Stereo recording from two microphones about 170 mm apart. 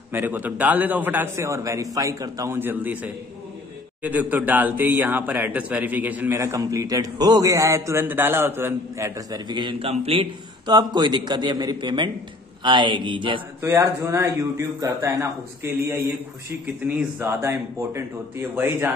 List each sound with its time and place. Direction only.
0.1 s a man's voice: 10° right (ahead or behind); by 13.4 s 30° right (ahead or behind)
13.6 s a man's voice: 15° right (ahead or behind)